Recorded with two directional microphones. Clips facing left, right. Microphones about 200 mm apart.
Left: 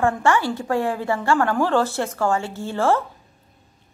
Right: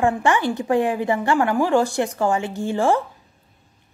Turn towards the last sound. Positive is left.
turn(degrees=-15)  # may be behind; listen again after turning